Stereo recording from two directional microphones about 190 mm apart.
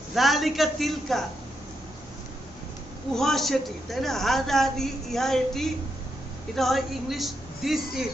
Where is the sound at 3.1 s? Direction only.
Centre (ahead or behind).